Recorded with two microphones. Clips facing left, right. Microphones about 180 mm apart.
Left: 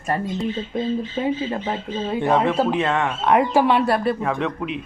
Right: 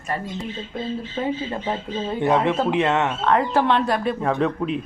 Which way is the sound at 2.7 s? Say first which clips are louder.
Right 1 dB; 20° right (ahead or behind).